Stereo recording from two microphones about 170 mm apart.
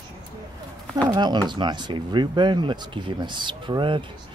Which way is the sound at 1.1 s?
25° right (ahead or behind).